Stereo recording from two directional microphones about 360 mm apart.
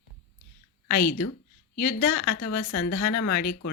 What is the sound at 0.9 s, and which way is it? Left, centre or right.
A woman's voice, left.